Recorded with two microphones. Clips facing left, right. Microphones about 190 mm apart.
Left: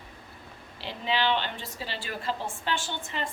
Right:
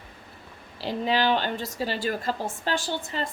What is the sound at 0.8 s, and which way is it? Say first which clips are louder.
A woman's voice: right 5 dB; 40° right (ahead or behind).